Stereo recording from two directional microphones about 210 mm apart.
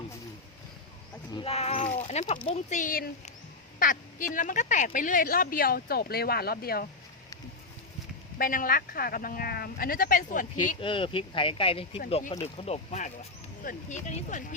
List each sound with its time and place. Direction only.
1.3 s speech: 25° left (ahead or behind); by 6.8 s 45° left (ahead or behind)
8.4 s speech: 45° left (ahead or behind)
10.8 s speech: 25° left (ahead or behind)